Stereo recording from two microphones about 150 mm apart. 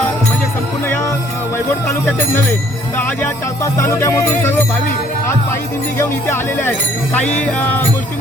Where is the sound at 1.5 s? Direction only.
15° left (ahead or behind).